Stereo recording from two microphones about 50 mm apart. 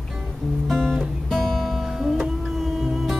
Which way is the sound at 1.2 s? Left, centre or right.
Centre.